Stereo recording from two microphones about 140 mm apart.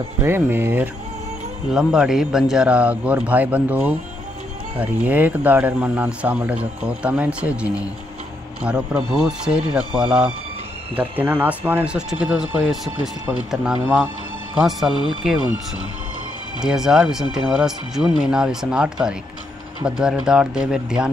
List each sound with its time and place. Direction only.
0.2 s speech: 15° right (ahead or behind)
1.7 s speech: 5° right (ahead or behind)
16.6 s speech: 5° right (ahead or behind)